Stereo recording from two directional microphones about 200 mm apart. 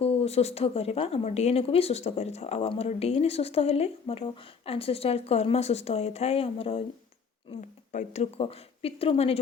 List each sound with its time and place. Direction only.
0.0 s speech: 30° left (ahead or behind)
7.9 s speech: 35° left (ahead or behind)